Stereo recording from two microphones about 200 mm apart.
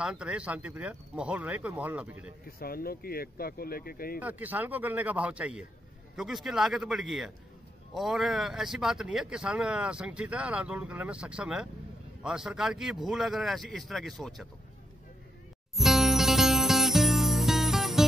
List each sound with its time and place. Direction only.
0.0 s speech: 5° right (ahead or behind)
2.4 s speech: 50° left (ahead or behind)
4.2 s speech: 10° right (ahead or behind)
15.7 s music: centre (ahead or behind)